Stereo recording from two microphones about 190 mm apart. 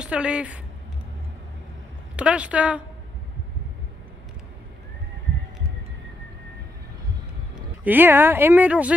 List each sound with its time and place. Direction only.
0.0 s a woman's voice: 5° right (ahead or behind)
2.1 s a woman's voice: 5° right (ahead or behind)
7.5 s speech: 10° right (ahead or behind)